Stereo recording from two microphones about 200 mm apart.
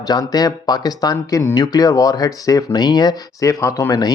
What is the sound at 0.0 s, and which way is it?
A man's voice, 20° left (ahead or behind).